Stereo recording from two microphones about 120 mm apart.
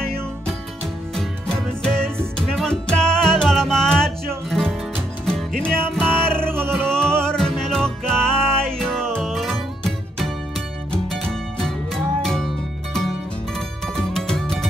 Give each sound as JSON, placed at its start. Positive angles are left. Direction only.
{"t": 0.0, "sound": "music", "side_deg": 5}
{"t": 6.3, "sound": "music", "side_deg": -20}
{"t": 6.7, "sound": "music", "side_deg": 5}
{"t": 13.9, "sound": "music", "side_deg": 5}